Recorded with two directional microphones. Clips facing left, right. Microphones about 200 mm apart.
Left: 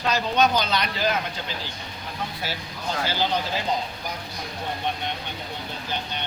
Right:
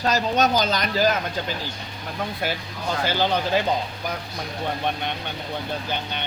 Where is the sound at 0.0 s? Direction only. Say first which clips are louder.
Right 1 dB; 40° right (ahead or behind).